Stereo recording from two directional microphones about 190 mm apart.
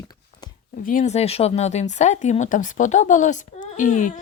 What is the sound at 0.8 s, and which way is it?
Speech, 45° left (ahead or behind).